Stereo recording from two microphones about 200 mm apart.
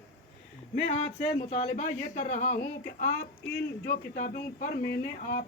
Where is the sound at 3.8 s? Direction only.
40° left (ahead or behind).